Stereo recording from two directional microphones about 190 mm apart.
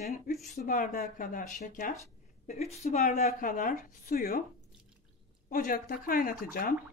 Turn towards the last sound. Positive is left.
turn(degrees=50)  # may be behind; listen again after turning